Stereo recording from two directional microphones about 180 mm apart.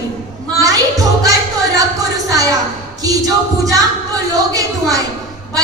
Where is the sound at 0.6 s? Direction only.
20° right (ahead or behind).